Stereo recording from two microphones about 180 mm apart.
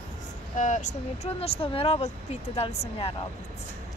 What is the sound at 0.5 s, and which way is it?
Speech, 40° left (ahead or behind).